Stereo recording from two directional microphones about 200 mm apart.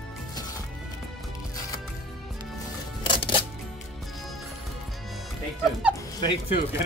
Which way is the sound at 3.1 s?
25° left (ahead or behind).